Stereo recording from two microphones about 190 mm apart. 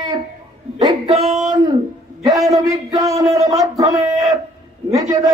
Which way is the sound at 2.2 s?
20° right (ahead or behind).